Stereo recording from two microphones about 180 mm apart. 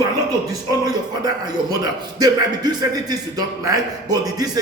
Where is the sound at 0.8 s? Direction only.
20° right (ahead or behind).